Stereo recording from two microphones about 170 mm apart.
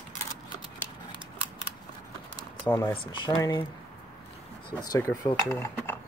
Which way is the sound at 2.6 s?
15° left (ahead or behind).